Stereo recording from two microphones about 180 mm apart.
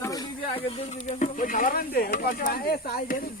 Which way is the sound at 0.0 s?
20° left (ahead or behind).